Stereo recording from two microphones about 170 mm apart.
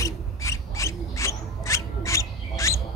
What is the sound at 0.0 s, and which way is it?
Rub, 20° left (ahead or behind).